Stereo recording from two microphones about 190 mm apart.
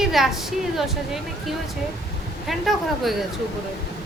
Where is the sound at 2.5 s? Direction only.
Centre (ahead or behind).